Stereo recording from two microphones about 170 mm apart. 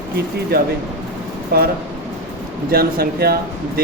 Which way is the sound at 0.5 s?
65° right (ahead or behind).